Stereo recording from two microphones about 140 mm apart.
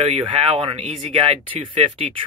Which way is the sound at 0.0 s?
40° right (ahead or behind).